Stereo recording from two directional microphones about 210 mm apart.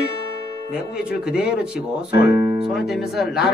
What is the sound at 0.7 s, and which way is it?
Speech, 5° right (ahead or behind).